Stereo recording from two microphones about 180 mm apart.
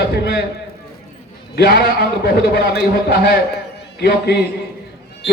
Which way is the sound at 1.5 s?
65° left (ahead or behind).